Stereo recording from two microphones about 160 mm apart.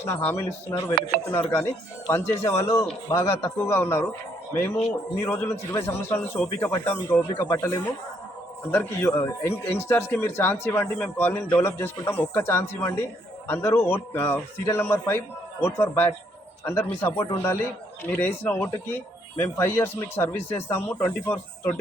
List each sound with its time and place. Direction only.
0.3 s speech: 10° left (ahead or behind)
1.0 s speech: 65° right (ahead or behind)
1.3 s speech: 15° left (ahead or behind)
5.2 s speech: 15° left (ahead or behind)